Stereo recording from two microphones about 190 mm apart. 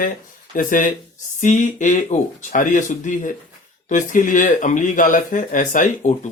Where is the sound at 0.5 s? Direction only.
45° left (ahead or behind).